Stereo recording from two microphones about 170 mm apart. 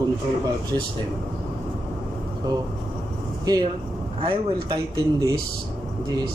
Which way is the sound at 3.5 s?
25° right (ahead or behind).